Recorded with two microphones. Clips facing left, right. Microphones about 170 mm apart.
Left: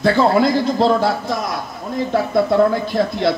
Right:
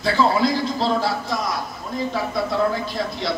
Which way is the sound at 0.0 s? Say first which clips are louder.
Left 5 dB; 55° left (ahead or behind).